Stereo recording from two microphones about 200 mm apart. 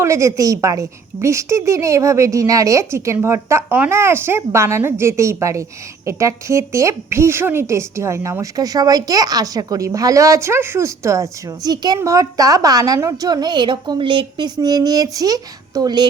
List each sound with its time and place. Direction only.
0.0 s a woman's voice: 15° right (ahead or behind)